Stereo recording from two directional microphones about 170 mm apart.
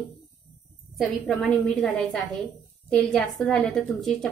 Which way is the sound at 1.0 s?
Centre (ahead or behind).